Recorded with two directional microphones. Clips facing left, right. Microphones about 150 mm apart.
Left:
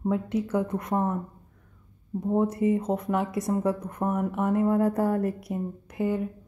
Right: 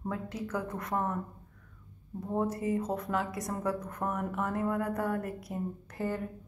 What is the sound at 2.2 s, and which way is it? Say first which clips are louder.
A woman's voice: left 7 dB; 20° left (ahead or behind).